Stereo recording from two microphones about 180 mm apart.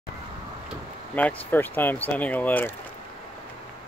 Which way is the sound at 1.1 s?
10° left (ahead or behind).